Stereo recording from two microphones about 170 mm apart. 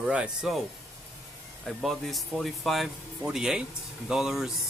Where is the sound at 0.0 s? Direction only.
5° right (ahead or behind).